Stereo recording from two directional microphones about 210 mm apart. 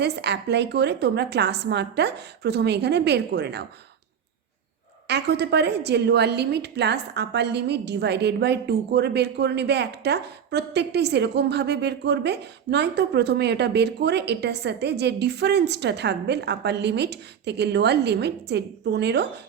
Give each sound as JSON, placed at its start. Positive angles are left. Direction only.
{"t": 0.0, "sound": "a woman's voice", "side_deg": -50}
{"t": 5.0, "sound": "a woman's voice", "side_deg": -55}